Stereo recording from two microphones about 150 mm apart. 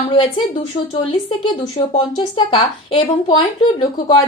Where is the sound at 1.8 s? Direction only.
30° left (ahead or behind).